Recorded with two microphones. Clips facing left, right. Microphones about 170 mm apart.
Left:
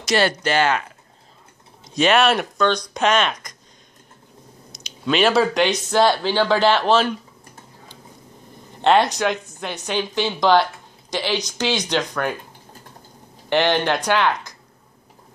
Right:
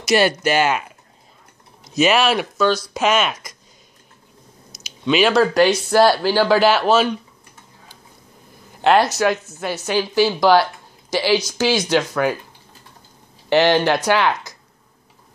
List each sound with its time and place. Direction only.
0.0 s speech: 10° right (ahead or behind)
2.0 s speech: 5° right (ahead or behind)
4.7 s speech: 5° right (ahead or behind)
8.8 s a woman's voice: 5° right (ahead or behind)
13.5 s speech: 10° right (ahead or behind)